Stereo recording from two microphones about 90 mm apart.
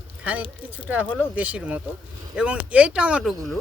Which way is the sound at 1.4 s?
15° right (ahead or behind).